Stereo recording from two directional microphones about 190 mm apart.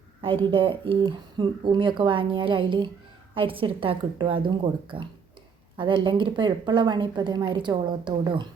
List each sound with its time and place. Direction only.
0.2 s speech: 30° right (ahead or behind)